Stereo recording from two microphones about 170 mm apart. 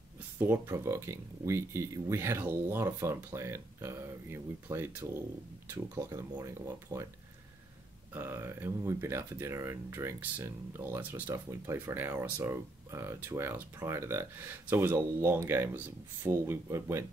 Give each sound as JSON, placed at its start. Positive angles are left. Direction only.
{"t": 0.4, "sound": "speech", "side_deg": -15}
{"t": 8.1, "sound": "speech", "side_deg": -15}